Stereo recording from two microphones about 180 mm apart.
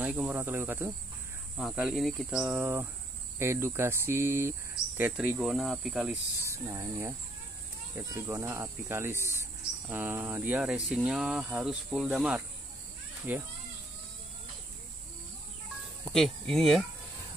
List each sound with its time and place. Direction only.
0.0 s speech: 10° right (ahead or behind)
6.5 s speech: 15° right (ahead or behind)
16.1 s speech: centre (ahead or behind)